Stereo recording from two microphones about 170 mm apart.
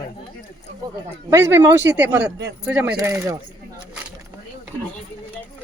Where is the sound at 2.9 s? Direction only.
20° right (ahead or behind).